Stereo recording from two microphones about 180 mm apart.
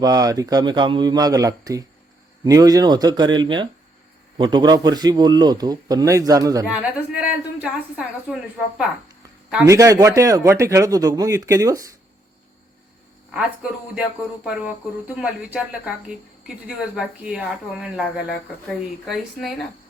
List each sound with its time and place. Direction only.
0.0 s a man's voice: 20° right (ahead or behind)
6.7 s speech: 5° right (ahead or behind)
9.6 s speech: 15° right (ahead or behind)
13.3 s speech: 5° right (ahead or behind)
19.0 s speech: centre (ahead or behind)